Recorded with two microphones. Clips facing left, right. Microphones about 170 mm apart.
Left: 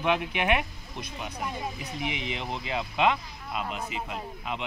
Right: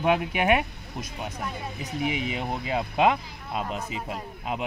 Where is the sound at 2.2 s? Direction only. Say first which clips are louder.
Right 4 dB; 45° right (ahead or behind).